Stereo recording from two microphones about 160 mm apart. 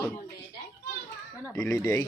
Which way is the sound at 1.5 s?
15° left (ahead or behind).